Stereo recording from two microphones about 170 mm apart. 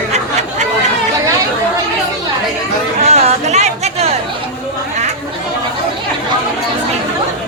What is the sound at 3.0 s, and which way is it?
Chatter, 40° right (ahead or behind).